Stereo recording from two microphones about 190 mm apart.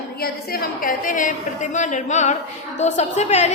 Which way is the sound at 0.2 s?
50° left (ahead or behind).